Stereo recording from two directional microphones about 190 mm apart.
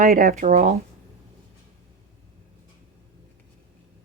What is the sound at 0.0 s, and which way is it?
Speech, 50° right (ahead or behind).